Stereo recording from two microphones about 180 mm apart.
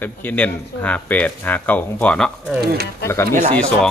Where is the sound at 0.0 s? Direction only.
10° left (ahead or behind).